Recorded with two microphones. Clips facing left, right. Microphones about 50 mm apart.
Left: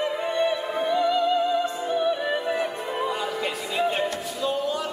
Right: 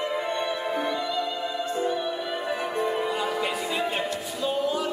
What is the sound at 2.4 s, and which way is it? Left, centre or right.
Music, centre.